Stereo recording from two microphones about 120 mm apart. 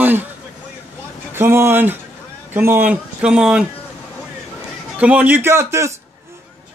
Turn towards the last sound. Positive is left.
turn(degrees=-20)  # may be behind; listen again after turning